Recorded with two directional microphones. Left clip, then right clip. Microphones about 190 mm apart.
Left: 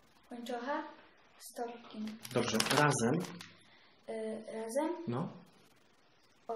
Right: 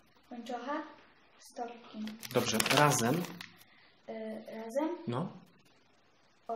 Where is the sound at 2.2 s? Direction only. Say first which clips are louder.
Right 2 dB; 25° right (ahead or behind).